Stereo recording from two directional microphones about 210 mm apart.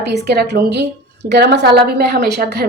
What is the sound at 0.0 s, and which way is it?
A woman's voice, 50° right (ahead or behind).